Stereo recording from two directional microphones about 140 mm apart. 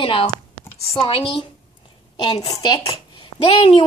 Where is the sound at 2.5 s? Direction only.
30° left (ahead or behind).